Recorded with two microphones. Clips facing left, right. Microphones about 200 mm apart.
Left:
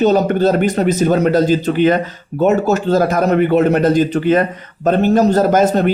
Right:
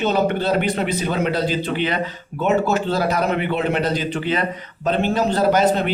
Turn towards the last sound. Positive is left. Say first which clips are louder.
# left 4 dB
turn(degrees=45)  # may be behind; listen again after turning